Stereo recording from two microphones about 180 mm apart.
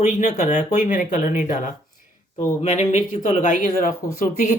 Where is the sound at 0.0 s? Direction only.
40° left (ahead or behind).